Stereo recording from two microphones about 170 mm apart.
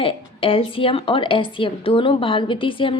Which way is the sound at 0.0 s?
30° left (ahead or behind).